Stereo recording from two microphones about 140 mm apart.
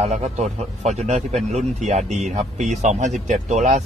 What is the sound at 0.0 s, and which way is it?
Speech, 55° right (ahead or behind).